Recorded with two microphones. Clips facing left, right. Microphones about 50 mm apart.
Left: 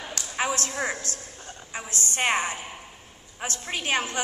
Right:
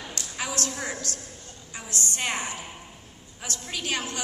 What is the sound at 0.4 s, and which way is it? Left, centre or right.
A woman's voice, left.